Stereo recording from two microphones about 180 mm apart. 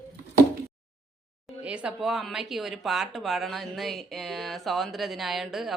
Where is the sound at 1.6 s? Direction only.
5° right (ahead or behind).